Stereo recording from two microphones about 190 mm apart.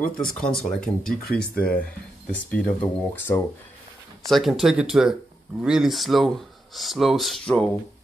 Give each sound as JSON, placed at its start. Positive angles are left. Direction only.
{"t": 0.2, "sound": "speech", "side_deg": 5}
{"t": 1.3, "sound": "speech", "side_deg": 55}
{"t": 2.5, "sound": "speech", "side_deg": 10}
{"t": 4.3, "sound": "speech", "side_deg": 0}